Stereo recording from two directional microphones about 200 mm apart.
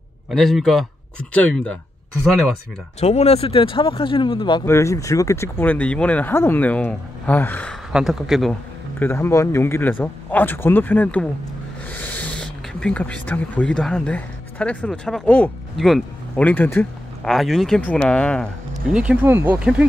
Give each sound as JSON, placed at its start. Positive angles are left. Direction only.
{"t": 0.3, "sound": "speech", "side_deg": 0}
{"t": 3.0, "sound": "speech", "side_deg": 30}
{"t": 9.0, "sound": "speech", "side_deg": 10}